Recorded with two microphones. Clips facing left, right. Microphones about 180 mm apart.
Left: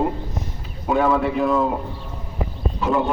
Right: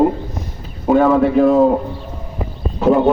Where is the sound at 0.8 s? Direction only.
45° right (ahead or behind).